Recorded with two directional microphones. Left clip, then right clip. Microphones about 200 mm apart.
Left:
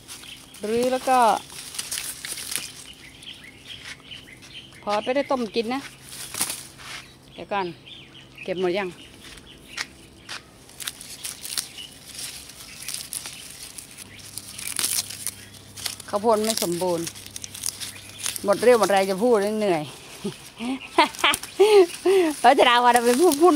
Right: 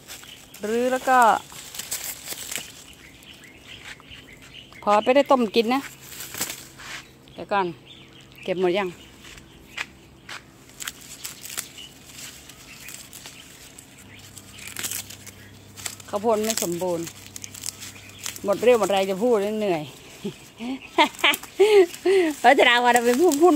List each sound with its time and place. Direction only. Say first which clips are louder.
0.6 s speech: even; 5° right (ahead or behind)
2.5 s a sound: even; 10° right (ahead or behind)
5.0 s speech: right 6 dB; 40° right (ahead or behind)
6.8 s a sound: right 1 dB; 20° right (ahead or behind)
8.5 s speech: right 2 dB; 15° right (ahead or behind)
9.8 s a sound: even; centre (ahead or behind)
15.8 s crumpling: left 2 dB; 5° left (ahead or behind)
16.6 s speech: left 1 dB; 15° left (ahead or behind)
17.3 s crumpling: left 2 dB; centre (ahead or behind)
18.2 s speech: left 1 dB; 10° left (ahead or behind)